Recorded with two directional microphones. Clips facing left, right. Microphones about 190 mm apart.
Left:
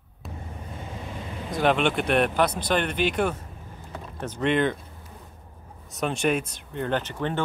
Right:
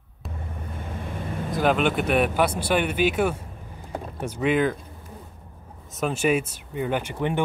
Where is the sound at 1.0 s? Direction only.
55° right (ahead or behind).